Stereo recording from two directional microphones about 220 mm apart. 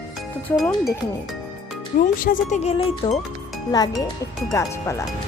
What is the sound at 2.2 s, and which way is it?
Speech, 35° left (ahead or behind).